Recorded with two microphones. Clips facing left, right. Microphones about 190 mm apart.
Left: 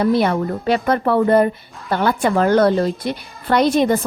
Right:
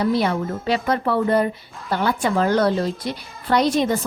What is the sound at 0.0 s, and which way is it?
A woman's voice, 55° left (ahead or behind).